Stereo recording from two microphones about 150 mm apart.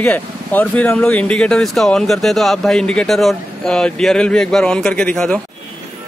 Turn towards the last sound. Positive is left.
turn(degrees=5)  # may be behind; listen again after turning